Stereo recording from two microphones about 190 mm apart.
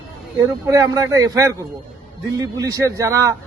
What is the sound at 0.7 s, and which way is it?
Speech, 15° right (ahead or behind).